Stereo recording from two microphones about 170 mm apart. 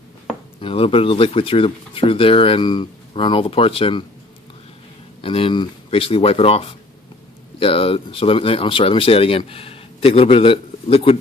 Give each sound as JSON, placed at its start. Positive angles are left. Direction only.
{"t": 0.6, "sound": "speech", "side_deg": 35}
{"t": 5.2, "sound": "speech", "side_deg": 30}